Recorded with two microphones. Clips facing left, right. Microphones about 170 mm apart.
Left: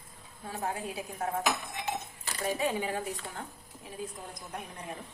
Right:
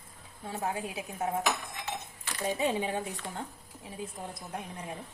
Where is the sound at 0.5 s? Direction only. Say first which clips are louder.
Right 1 dB; 25° right (ahead or behind).